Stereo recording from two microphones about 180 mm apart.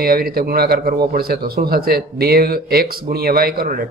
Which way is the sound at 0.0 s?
55° right (ahead or behind).